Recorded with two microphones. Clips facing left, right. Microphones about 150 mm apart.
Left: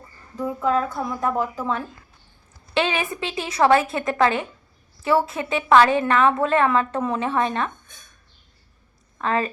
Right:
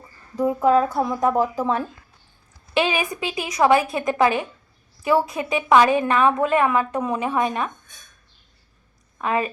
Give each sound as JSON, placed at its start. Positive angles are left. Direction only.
{"t": 0.3, "sound": "a woman's voice", "side_deg": -15}
{"t": 9.1, "sound": "a woman's voice", "side_deg": -15}